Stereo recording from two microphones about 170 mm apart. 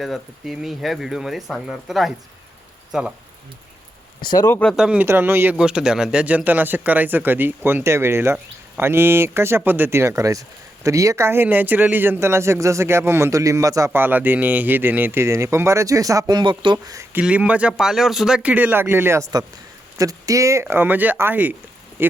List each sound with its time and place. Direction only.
0.0 s speech: centre (ahead or behind)
4.2 s speech: 25° left (ahead or behind)
4.4 s speech: 10° left (ahead or behind)
4.8 s a man's voice: 10° right (ahead or behind)